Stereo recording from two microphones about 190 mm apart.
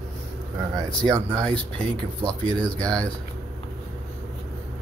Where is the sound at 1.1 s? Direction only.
20° right (ahead or behind).